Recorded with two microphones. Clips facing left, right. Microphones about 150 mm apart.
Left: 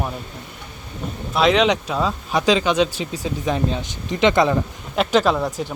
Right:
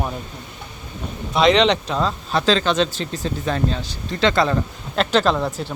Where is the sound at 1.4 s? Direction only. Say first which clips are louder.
Right 1 dB; 5° left (ahead or behind).